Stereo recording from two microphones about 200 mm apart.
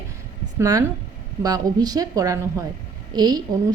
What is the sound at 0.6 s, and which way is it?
A woman's voice, 15° right (ahead or behind).